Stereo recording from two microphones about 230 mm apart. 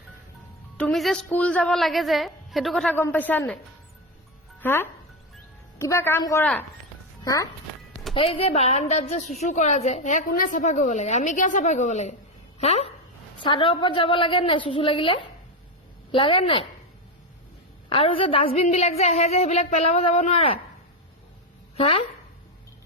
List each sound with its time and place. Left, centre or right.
0.8 s a woman's voice: centre
4.6 s a woman's voice: centre
8.1 s a woman's voice: left
17.8 s a woman's voice: left
21.8 s speech: left